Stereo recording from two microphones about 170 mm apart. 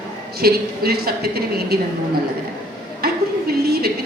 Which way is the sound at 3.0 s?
65° right (ahead or behind).